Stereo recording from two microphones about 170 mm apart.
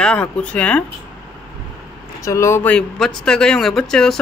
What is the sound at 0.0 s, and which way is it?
Speech, 5° left (ahead or behind).